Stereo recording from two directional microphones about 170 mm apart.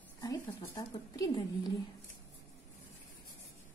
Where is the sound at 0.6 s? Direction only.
20° left (ahead or behind).